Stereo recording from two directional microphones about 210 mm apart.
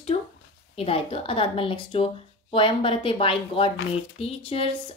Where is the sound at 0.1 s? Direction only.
35° left (ahead or behind).